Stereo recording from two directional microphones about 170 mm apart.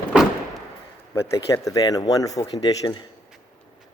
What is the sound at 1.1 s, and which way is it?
Speech, 15° left (ahead or behind).